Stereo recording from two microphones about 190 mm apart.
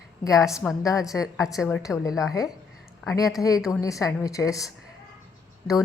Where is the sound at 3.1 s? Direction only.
15° left (ahead or behind).